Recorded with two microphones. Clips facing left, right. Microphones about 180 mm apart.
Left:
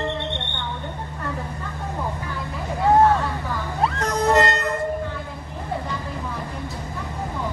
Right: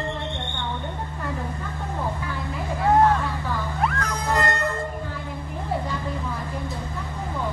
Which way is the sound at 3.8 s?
20° left (ahead or behind).